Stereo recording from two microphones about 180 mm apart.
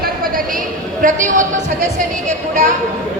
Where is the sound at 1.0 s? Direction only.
45° right (ahead or behind).